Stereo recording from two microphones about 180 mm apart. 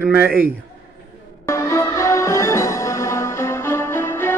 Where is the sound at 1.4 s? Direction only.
15° left (ahead or behind).